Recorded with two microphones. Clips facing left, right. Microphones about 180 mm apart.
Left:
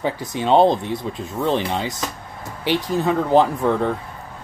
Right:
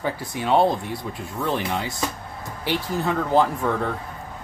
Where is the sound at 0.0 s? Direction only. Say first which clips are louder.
Left 4 dB; 20° left (ahead or behind).